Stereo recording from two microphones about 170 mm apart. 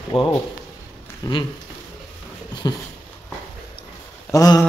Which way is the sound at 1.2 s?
25° left (ahead or behind).